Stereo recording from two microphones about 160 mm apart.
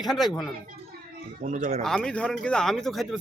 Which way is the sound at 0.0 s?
Centre (ahead or behind).